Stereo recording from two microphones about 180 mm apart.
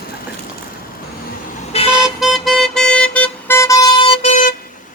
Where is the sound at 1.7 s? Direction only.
35° left (ahead or behind).